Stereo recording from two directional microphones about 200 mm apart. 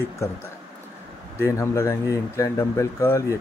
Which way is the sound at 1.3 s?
10° left (ahead or behind).